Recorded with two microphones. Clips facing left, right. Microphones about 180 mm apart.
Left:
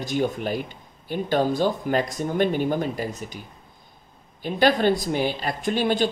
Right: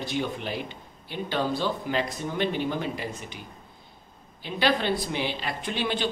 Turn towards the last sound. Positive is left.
turn(degrees=45)  # may be behind; listen again after turning